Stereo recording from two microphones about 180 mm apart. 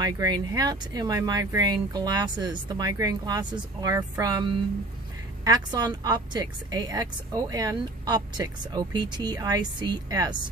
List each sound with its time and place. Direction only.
0.0 s speech: 20° right (ahead or behind)